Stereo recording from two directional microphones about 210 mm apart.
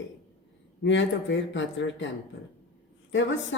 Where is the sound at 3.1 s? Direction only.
60° left (ahead or behind).